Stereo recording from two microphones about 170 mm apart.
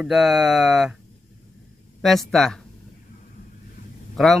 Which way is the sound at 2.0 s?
Centre (ahead or behind).